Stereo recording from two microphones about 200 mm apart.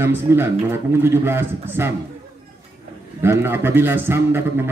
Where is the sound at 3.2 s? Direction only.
10° right (ahead or behind).